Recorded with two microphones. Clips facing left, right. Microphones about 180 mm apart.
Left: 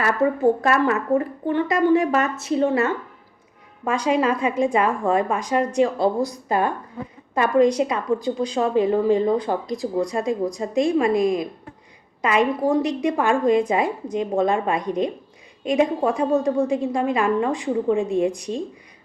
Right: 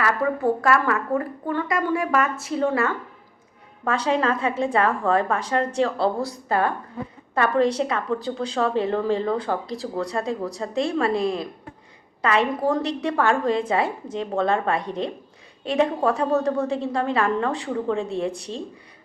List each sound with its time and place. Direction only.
0.0 s a woman's voice: 25° left (ahead or behind)